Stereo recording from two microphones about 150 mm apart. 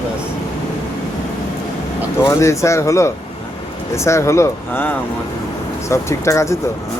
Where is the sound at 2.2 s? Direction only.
20° left (ahead or behind).